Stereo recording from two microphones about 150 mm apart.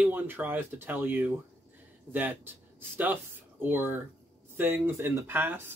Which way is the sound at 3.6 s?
15° right (ahead or behind).